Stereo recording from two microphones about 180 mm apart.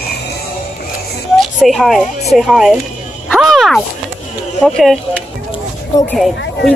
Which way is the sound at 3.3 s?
Centre (ahead or behind).